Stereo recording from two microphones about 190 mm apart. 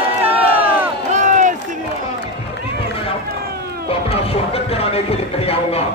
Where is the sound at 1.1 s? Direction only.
40° right (ahead or behind).